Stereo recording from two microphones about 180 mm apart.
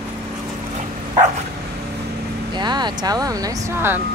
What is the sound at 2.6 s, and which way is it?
Speech, 25° right (ahead or behind).